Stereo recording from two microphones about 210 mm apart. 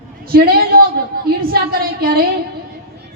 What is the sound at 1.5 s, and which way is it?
Speech, 45° right (ahead or behind).